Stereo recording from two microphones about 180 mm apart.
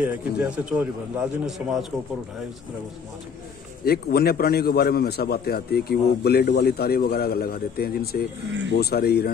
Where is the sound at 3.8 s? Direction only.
60° left (ahead or behind).